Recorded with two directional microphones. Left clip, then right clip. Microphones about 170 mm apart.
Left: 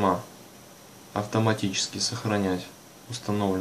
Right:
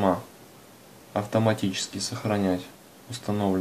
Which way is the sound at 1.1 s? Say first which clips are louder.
Right 1 dB; 30° right (ahead or behind).